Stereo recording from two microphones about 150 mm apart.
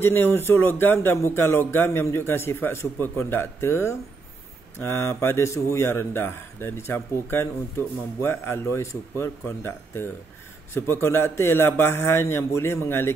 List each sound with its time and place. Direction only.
0.0 s speech: 15° left (ahead or behind)